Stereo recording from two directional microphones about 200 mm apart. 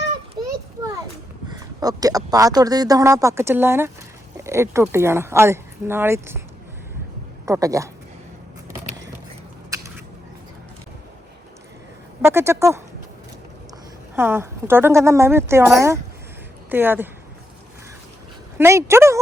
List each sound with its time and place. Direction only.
1.5 s speech: 20° right (ahead or behind)
7.4 s a man's voice: 15° right (ahead or behind)
9.7 s a sound: 15° right (ahead or behind)
12.2 s speech: 10° right (ahead or behind)
14.2 s speech: 10° right (ahead or behind)
18.5 s speech: 15° right (ahead or behind)